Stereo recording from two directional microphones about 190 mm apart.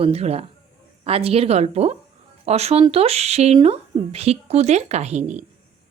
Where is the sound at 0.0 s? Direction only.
30° right (ahead or behind).